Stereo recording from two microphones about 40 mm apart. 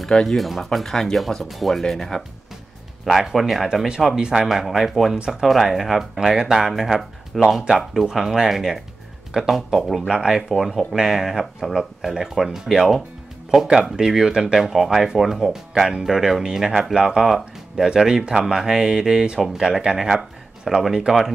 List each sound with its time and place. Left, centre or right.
0.0 s speech: centre
0.4 s speech: centre
3.1 s speech: centre
5.1 s speech: centre
5.4 s speech: centre
14.7 s speech: centre